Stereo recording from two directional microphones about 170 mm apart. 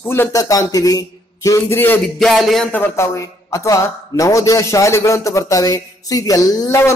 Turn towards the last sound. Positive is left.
turn(degrees=15)  # may be behind; listen again after turning